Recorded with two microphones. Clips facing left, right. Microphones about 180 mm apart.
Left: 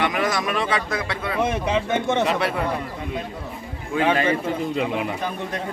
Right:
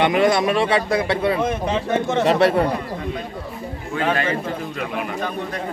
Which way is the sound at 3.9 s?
15° left (ahead or behind).